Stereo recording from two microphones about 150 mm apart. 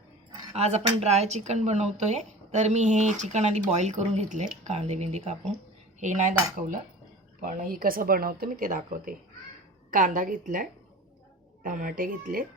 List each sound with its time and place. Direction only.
0.5 s speech: 45° right (ahead or behind)
7.4 s speech: 70° right (ahead or behind)